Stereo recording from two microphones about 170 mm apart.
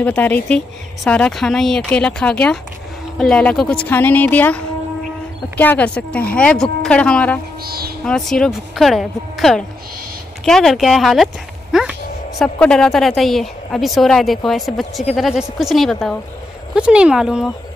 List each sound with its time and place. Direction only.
0.0 s a woman's voice: 10° left (ahead or behind)
7.6 s speech: 60° right (ahead or behind)
8.0 s a woman's voice: 5° left (ahead or behind)
11.7 s a sound: 5° right (ahead or behind)
12.5 s a woman's voice: 5° left (ahead or behind)